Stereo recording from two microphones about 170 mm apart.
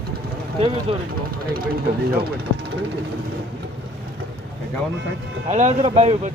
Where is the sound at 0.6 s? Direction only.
30° right (ahead or behind).